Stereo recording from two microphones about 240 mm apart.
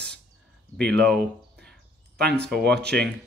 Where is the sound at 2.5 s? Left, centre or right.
Centre.